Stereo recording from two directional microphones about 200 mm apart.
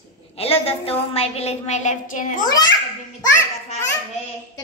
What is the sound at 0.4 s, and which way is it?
A woman's voice, 30° left (ahead or behind).